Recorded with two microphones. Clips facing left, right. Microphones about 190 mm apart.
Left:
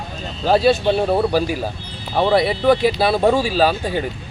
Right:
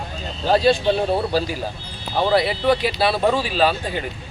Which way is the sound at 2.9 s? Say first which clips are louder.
Left 3 dB; 15° left (ahead or behind).